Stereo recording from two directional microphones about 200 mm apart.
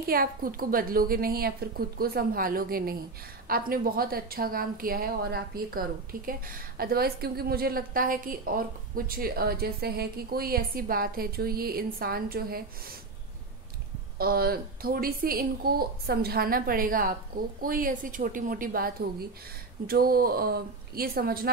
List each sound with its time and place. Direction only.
0.0 s a woman's voice: 45° right (ahead or behind)
14.1 s a woman's voice: 50° right (ahead or behind)